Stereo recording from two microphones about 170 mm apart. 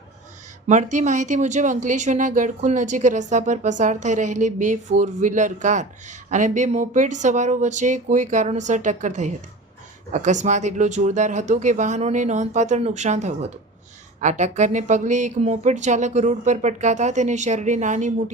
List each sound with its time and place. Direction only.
0.7 s speech: 45° right (ahead or behind)